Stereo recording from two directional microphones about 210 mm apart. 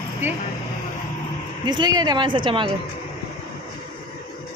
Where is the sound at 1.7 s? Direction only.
20° right (ahead or behind).